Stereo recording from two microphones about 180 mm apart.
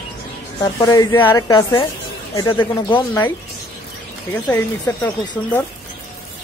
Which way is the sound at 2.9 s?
10° left (ahead or behind).